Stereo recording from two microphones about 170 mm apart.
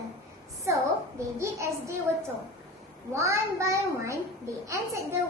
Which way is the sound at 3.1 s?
15° right (ahead or behind).